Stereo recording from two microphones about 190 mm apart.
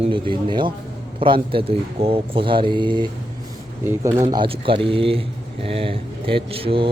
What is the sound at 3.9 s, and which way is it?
Speech, 15° right (ahead or behind).